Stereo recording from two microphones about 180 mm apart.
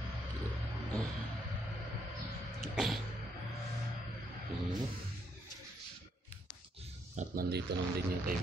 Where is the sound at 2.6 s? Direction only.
Centre (ahead or behind).